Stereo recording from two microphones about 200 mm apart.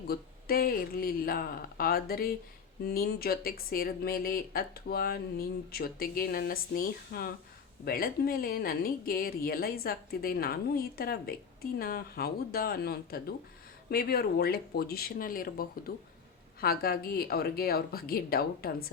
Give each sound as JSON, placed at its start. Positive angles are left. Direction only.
{"t": 0.1, "sound": "speech", "side_deg": 50}